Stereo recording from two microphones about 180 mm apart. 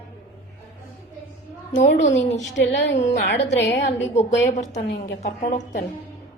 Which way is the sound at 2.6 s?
80° left.